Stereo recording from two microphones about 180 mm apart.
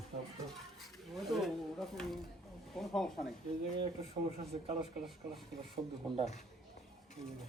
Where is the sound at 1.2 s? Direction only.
Centre (ahead or behind).